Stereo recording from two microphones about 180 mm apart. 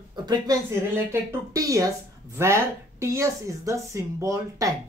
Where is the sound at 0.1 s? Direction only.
25° right (ahead or behind).